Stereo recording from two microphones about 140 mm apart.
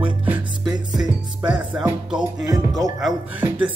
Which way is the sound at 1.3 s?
10° right (ahead or behind).